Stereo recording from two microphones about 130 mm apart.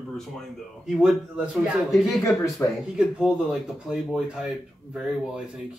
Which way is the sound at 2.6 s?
15° left (ahead or behind).